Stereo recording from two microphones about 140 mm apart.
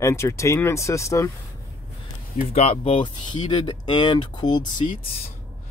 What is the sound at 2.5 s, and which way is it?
Speech, 45° left (ahead or behind).